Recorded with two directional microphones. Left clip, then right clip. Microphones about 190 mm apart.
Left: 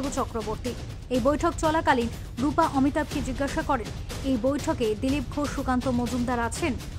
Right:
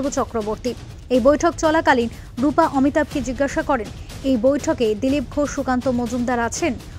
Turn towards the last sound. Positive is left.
turn(degrees=-25)  # may be behind; listen again after turning